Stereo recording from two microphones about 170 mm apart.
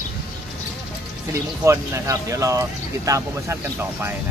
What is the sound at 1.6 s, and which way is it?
Speech, 15° right (ahead or behind).